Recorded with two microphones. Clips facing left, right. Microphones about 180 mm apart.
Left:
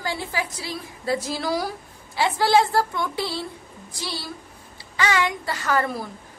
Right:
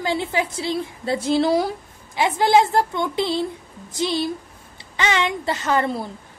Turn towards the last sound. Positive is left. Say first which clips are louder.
# right 3 dB
turn(degrees=-25)  # may be behind; listen again after turning